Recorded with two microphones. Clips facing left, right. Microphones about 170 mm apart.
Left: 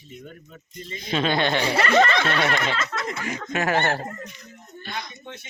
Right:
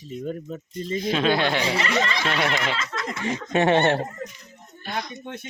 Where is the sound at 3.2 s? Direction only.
30° right (ahead or behind).